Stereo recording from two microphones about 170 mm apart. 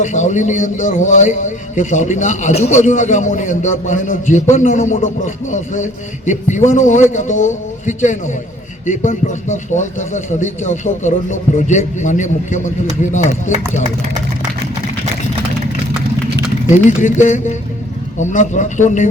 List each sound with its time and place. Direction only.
0.0 s a man's voice: 45° left (ahead or behind)
16.8 s a man's voice: 45° left (ahead or behind)